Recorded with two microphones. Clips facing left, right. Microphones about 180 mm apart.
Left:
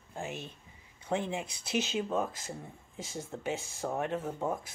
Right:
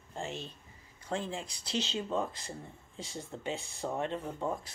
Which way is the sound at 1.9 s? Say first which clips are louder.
Left 2 dB; 5° left (ahead or behind).